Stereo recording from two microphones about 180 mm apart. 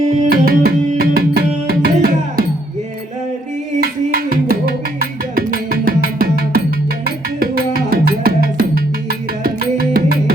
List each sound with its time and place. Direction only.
0.3 s tabla: 55° right (ahead or behind)
3.8 s music: 60° right (ahead or behind)